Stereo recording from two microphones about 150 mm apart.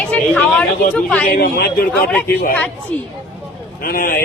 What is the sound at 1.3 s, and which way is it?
Speech, 90° left.